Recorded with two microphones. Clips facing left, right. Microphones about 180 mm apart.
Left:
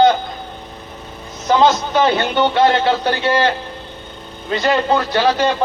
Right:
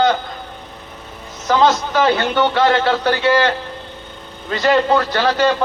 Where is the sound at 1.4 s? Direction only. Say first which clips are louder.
Left 1 dB; 25° left (ahead or behind).